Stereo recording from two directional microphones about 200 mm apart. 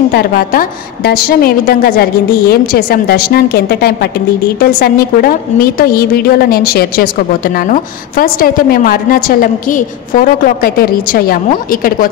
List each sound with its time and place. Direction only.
0.1 s a woman's voice: 50° left (ahead or behind)